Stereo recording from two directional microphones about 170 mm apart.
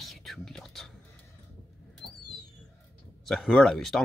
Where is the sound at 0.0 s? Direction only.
Centre (ahead or behind).